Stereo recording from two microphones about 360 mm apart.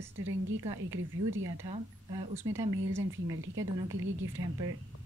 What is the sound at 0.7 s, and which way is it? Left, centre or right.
Speech, centre.